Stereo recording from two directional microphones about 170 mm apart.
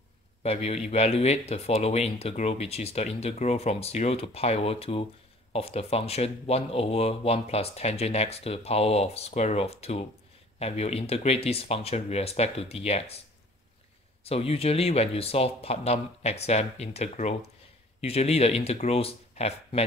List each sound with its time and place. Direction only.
0.4 s a man's voice: 40° left (ahead or behind)
14.2 s speech: 35° left (ahead or behind)